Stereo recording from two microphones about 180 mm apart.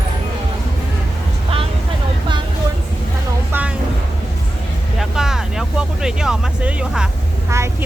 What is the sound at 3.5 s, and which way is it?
Vehicle, 10° right (ahead or behind).